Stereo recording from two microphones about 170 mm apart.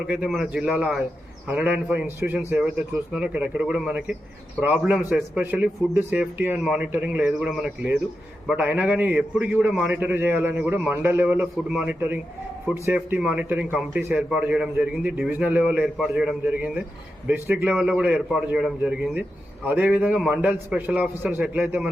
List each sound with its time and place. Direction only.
0.1 s a man's voice: 5° right (ahead or behind)
11.5 s a man's voice: centre (ahead or behind)
11.9 s a man's voice: 10° right (ahead or behind)